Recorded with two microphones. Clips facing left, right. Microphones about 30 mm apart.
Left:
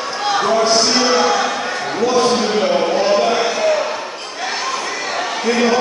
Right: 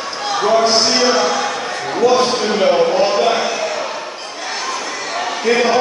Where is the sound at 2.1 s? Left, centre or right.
Centre.